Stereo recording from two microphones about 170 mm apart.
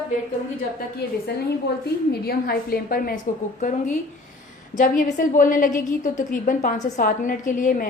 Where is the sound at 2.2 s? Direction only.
60° left (ahead or behind).